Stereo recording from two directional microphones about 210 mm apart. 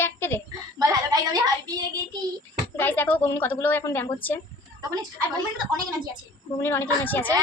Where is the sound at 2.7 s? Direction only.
10° left (ahead or behind).